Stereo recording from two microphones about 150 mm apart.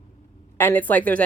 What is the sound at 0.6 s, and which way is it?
Speech, 15° left (ahead or behind).